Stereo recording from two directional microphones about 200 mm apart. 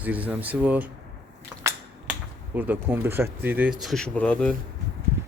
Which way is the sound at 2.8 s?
10° right (ahead or behind).